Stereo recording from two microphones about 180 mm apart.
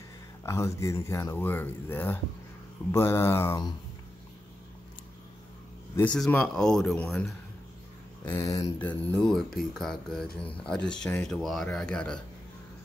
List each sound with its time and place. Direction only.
0.5 s speech: 15° left (ahead or behind)
5.9 s speech: 5° left (ahead or behind)
8.3 s speech: 15° left (ahead or behind)